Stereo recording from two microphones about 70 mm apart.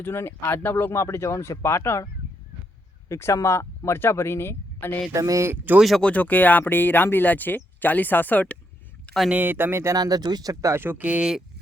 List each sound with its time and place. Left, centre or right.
0.0 s speech: left
3.1 s speech: left
5.1 s speech: right
6.0 s speech: centre
9.3 s speech: right
9.9 s speech: right
10.8 s speech: right